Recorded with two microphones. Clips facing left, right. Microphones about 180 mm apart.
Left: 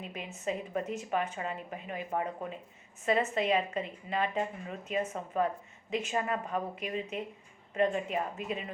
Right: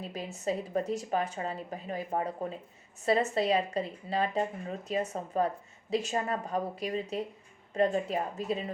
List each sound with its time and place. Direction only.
0.0 s speech: 35° right (ahead or behind)